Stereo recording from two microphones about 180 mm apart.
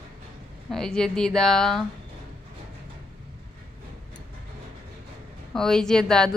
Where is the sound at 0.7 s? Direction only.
5° left (ahead or behind).